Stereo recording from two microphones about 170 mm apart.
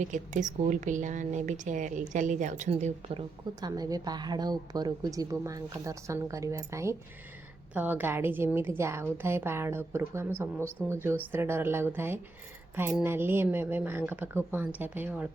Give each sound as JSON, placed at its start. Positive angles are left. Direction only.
{"t": 0.0, "sound": "a woman's voice", "side_deg": -45}
{"t": 3.6, "sound": "a woman's voice", "side_deg": -20}